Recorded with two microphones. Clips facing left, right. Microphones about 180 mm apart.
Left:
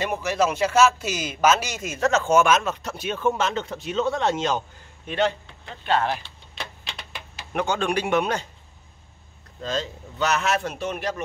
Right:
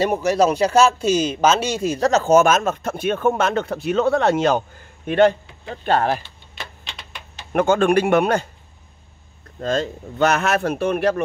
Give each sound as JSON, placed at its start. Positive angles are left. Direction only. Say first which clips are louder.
{"t": 0.0, "sound": "speech", "louder": "right 6 dB", "side_deg": -40}
{"t": 6.5, "sound": "typewriter", "louder": "even", "side_deg": 0}
{"t": 7.5, "sound": "speech", "louder": "right 8 dB", "side_deg": -50}
{"t": 9.6, "sound": "speech", "louder": "right 6 dB", "side_deg": -50}